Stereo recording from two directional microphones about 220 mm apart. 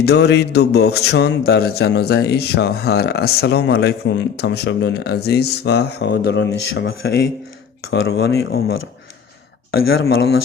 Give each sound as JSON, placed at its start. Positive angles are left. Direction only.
{"t": 0.0, "sound": "a man's voice", "side_deg": 50}
{"t": 9.8, "sound": "a man's voice", "side_deg": 50}